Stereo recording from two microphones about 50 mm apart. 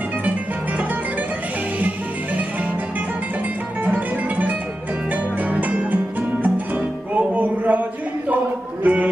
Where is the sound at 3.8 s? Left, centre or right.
Right.